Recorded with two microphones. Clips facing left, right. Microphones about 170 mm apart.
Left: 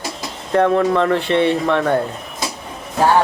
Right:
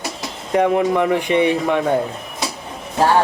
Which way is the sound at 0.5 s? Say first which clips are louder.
Left 1 dB; 15° right (ahead or behind).